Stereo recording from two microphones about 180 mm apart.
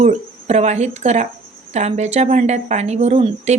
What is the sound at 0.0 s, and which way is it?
A woman's voice, 40° right (ahead or behind).